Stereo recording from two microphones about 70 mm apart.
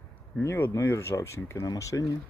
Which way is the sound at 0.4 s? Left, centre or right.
Left.